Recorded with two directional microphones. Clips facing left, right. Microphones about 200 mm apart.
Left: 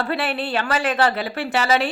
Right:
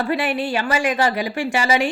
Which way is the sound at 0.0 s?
15° right (ahead or behind).